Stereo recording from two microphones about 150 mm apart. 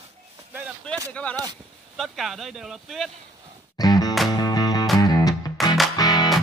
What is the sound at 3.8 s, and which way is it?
Music, 25° left (ahead or behind).